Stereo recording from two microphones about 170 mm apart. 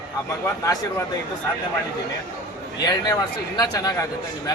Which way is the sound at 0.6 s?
20° left (ahead or behind).